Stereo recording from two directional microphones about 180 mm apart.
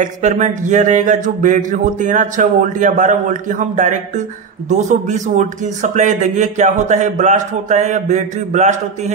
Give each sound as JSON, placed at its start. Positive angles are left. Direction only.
{"t": 0.0, "sound": "a man's voice", "side_deg": -40}